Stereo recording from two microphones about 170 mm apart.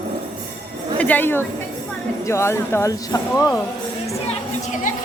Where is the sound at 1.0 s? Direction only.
10° left (ahead or behind).